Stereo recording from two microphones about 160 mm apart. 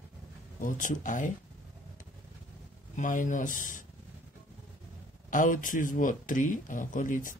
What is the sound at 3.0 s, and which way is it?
Speech, 55° left (ahead or behind).